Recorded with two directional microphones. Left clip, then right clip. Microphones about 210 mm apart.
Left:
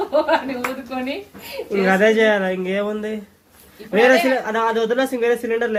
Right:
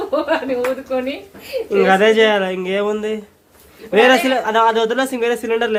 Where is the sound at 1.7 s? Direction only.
20° right (ahead or behind).